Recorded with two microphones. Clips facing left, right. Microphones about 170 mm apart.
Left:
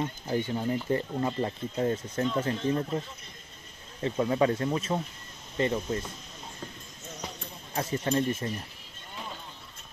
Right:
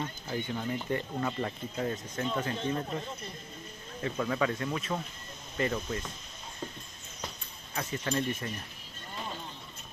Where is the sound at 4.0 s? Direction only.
30° left (ahead or behind).